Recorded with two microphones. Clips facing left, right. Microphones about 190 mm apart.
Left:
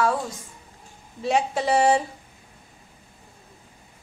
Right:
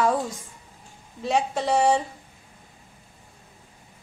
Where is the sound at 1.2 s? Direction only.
Centre (ahead or behind).